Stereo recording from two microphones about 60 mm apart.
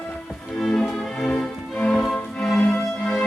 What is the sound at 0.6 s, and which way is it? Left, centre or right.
Music, centre.